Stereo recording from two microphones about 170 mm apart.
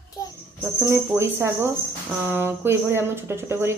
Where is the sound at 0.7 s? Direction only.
15° right (ahead or behind).